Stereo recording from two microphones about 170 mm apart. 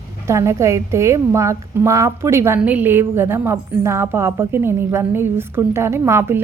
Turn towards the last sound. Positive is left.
turn(degrees=-15)  # may be behind; listen again after turning